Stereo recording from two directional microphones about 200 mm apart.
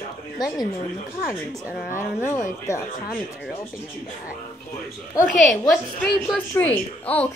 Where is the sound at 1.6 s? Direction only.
10° right (ahead or behind).